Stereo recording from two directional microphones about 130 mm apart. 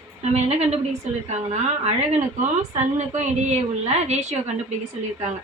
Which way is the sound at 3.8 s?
55° right (ahead or behind).